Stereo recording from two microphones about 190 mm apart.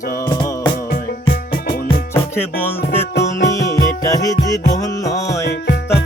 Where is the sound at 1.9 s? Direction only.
15° left (ahead or behind).